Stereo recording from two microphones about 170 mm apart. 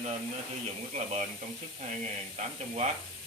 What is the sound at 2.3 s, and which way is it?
Speech, 45° right (ahead or behind).